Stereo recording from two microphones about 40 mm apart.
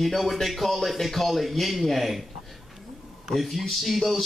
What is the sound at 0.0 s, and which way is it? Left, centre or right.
Speech, centre.